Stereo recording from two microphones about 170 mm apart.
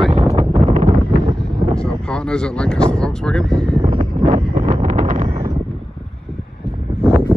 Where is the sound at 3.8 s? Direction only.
30° right (ahead or behind).